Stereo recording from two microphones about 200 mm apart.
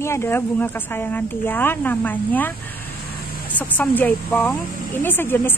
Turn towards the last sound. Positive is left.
turn(degrees=10)  # may be behind; listen again after turning